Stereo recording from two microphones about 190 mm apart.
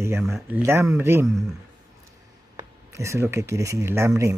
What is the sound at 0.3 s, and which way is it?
Speech, 15° right (ahead or behind).